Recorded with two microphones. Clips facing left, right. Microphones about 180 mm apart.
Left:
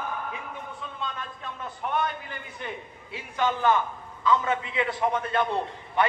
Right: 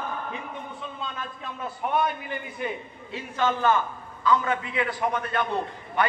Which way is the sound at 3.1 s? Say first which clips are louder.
Right 1 dB; 15° left (ahead or behind).